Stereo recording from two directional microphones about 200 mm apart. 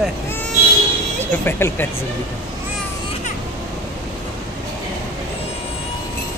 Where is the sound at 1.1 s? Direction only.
10° left (ahead or behind).